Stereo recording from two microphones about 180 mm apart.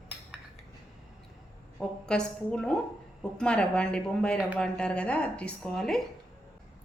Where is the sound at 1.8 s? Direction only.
5° left (ahead or behind).